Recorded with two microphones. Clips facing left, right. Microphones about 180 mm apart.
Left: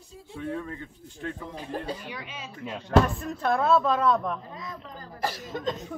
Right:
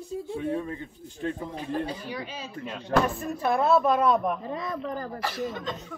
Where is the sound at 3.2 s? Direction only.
10° right (ahead or behind).